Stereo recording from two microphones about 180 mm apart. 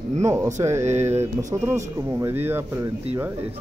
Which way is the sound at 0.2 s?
15° right (ahead or behind).